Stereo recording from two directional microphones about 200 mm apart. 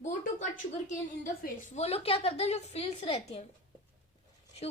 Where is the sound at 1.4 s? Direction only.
35° left (ahead or behind).